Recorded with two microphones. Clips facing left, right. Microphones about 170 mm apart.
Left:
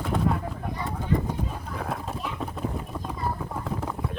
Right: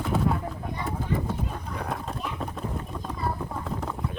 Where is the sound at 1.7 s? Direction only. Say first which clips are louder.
Left 1 dB; centre (ahead or behind).